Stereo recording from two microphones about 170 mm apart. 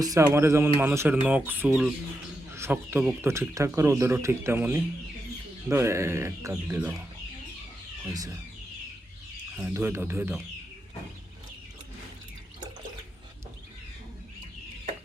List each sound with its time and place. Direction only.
0.0 s speech: 20° right (ahead or behind)
8.0 s speech: 20° right (ahead or behind)
9.6 s speech: 10° right (ahead or behind)